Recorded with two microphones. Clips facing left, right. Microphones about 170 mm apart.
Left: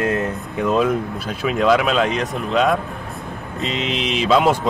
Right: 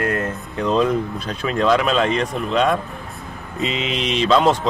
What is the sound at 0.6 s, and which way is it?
Speech, 5° left (ahead or behind).